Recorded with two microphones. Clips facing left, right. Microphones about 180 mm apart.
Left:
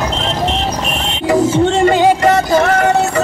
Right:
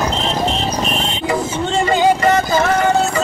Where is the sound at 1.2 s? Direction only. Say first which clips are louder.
Left 11 dB; 90° left.